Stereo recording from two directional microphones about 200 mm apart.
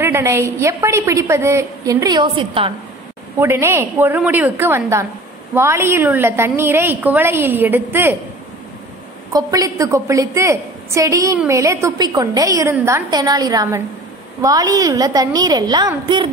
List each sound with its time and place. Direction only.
0.0 s a woman's voice: 15° right (ahead or behind)
3.3 s a woman's voice: 10° right (ahead or behind)
9.3 s a woman's voice: 15° right (ahead or behind)